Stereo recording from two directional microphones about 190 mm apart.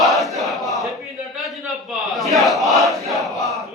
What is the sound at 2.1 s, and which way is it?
Battle cry, centre (ahead or behind).